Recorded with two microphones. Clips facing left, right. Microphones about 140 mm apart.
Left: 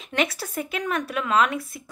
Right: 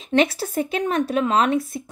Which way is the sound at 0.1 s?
25° right (ahead or behind).